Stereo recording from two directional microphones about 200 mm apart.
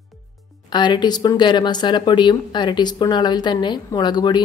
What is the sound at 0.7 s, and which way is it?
Speech, 20° left (ahead or behind).